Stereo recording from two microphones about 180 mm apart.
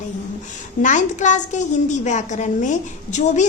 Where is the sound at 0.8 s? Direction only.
45° left (ahead or behind).